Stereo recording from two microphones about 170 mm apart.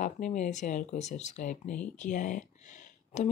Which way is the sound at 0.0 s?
45° left (ahead or behind).